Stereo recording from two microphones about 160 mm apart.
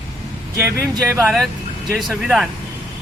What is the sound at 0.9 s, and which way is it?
Speech, 15° right (ahead or behind).